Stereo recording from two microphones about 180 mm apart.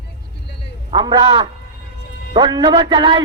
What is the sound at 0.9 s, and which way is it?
A man's voice, 25° right (ahead or behind).